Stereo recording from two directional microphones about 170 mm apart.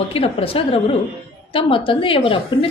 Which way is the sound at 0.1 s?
35° left (ahead or behind).